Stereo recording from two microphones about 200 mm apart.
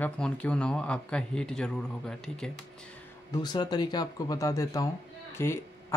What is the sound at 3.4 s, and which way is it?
Speech, 20° left (ahead or behind).